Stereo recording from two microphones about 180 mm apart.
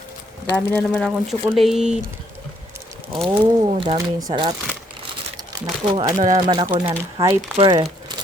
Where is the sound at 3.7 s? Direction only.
30° right (ahead or behind).